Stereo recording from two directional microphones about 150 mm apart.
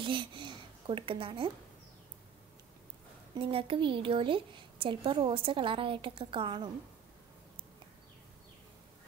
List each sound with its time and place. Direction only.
0.0 s a woman's voice: 35° right (ahead or behind)
3.3 s a woman's voice: 35° right (ahead or behind)